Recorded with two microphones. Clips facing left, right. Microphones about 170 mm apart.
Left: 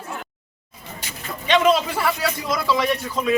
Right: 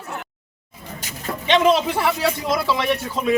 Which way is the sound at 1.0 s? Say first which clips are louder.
Right 1 dB; 45° right (ahead or behind).